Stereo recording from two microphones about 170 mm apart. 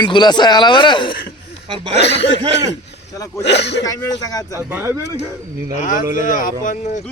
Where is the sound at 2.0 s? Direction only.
90° left.